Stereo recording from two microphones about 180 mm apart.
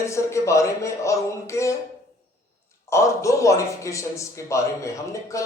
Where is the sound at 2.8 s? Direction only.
15° left (ahead or behind).